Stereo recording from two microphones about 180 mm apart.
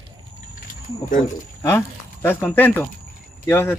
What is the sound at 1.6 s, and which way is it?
Speech, 10° left (ahead or behind).